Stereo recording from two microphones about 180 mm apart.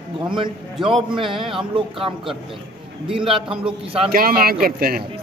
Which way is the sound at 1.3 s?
Centre (ahead or behind).